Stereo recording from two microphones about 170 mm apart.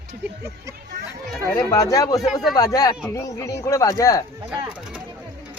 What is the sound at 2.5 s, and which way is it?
Speech, 20° left (ahead or behind).